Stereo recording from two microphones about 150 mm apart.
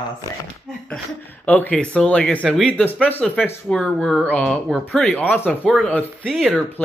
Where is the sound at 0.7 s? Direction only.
5° left (ahead or behind).